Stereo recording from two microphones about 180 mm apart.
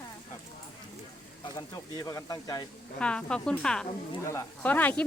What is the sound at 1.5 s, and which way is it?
Speech, 20° left (ahead or behind).